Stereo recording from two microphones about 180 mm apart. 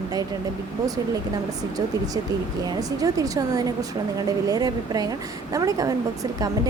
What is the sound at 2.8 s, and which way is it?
A woman's voice, 20° right (ahead or behind).